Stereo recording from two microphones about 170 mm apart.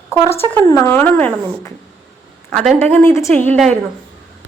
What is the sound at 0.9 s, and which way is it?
Speech, 10° left (ahead or behind).